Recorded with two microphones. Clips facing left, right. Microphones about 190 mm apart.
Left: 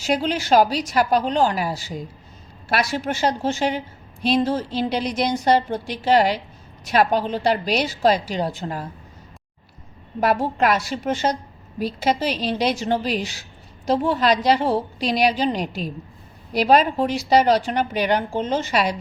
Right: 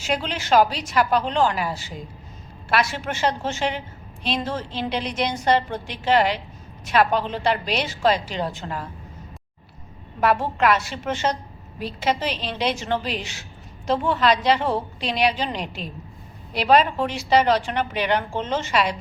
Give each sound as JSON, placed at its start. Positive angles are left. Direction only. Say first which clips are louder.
{"t": 0.0, "sound": "a woman's voice", "louder": "left 4 dB", "side_deg": 40}
{"t": 10.2, "sound": "a woman's voice", "louder": "left 1 dB", "side_deg": 40}